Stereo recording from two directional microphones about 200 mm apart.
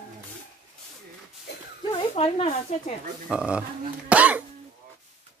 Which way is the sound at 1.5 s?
55° left (ahead or behind).